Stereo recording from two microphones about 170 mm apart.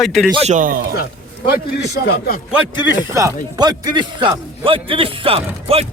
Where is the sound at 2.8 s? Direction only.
25° left (ahead or behind).